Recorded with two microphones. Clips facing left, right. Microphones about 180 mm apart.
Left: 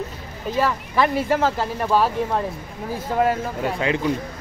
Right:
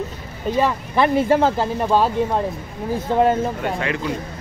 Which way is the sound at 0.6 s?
20° right (ahead or behind).